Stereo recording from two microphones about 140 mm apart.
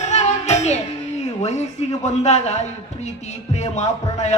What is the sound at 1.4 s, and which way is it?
A man's voice, 55° left (ahead or behind).